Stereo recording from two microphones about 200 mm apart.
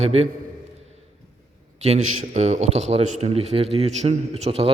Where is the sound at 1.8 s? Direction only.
35° right (ahead or behind).